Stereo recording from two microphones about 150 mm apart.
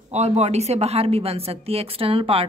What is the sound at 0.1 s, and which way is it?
A woman's voice, 45° right (ahead or behind).